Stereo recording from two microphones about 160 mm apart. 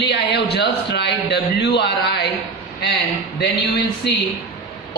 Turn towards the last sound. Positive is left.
turn(degrees=90)